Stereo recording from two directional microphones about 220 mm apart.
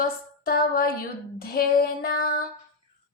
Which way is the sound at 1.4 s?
45° left (ahead or behind).